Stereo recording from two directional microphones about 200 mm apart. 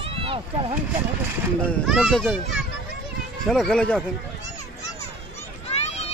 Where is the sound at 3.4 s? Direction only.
Centre (ahead or behind).